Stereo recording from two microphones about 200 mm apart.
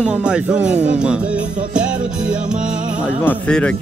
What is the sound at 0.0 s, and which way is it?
Speech, 5° right (ahead or behind).